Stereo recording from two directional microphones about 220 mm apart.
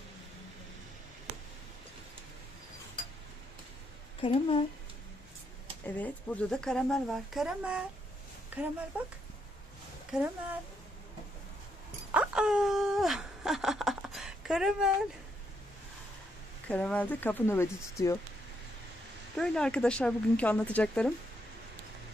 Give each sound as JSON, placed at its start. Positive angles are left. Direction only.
{"t": 4.2, "sound": "speech", "side_deg": 25}
{"t": 5.9, "sound": "speech", "side_deg": 5}
{"t": 10.1, "sound": "speech", "side_deg": -5}
{"t": 12.1, "sound": "speech", "side_deg": -5}
{"t": 16.6, "sound": "speech", "side_deg": 5}
{"t": 19.3, "sound": "speech", "side_deg": 5}